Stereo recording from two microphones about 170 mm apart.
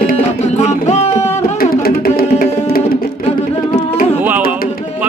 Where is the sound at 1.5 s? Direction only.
60° left (ahead or behind).